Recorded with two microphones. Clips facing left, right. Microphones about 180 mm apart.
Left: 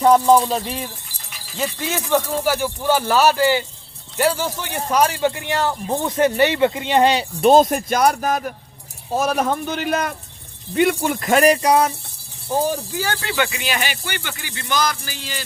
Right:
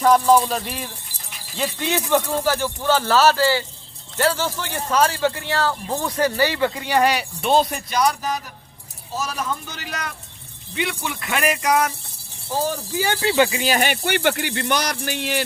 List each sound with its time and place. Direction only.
0.4 s speech: 20° left (ahead or behind)
1.5 s speech: centre (ahead or behind)
2.4 s speech: 10° left (ahead or behind); by 7.3 s 25° left (ahead or behind)
7.4 s speech: 45° left (ahead or behind)
12.5 s speech: 15° left (ahead or behind)
13.2 s speech: 30° right (ahead or behind); by 15.4 s 65° right (ahead or behind)